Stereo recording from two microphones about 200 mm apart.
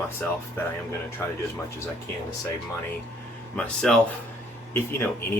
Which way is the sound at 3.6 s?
5° left (ahead or behind).